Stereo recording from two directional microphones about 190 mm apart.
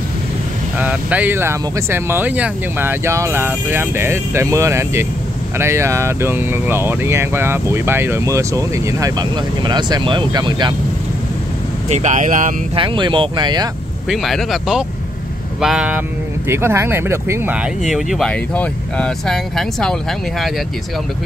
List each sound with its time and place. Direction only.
0.7 s speech: 10° right (ahead or behind); by 10.7 s 25° right (ahead or behind)
11.9 s speech: 40° right (ahead or behind)
12.7 s speech: 25° right (ahead or behind)
14.0 s speech: centre (ahead or behind)